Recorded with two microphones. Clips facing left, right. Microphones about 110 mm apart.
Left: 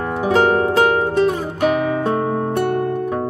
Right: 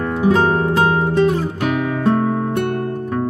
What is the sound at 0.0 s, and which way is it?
Music, 10° left (ahead or behind).